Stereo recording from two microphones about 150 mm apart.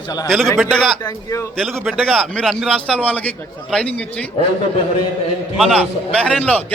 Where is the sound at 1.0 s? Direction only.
20° left (ahead or behind).